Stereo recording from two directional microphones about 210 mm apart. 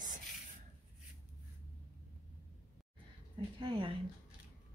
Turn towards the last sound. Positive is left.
turn(degrees=-25)  # may be behind; listen again after turning